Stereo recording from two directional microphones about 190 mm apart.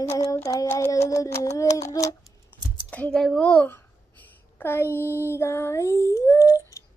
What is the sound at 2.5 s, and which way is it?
Typing, 10° left (ahead or behind).